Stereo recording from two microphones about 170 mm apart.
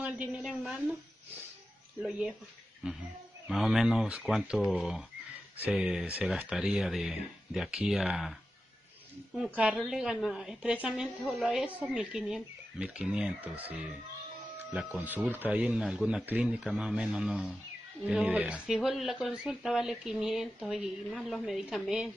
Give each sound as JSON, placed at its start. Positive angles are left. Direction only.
{"t": 0.0, "sound": "speech", "side_deg": -5}
{"t": 2.0, "sound": "speech", "side_deg": -5}
{"t": 14.7, "sound": "speech", "side_deg": -10}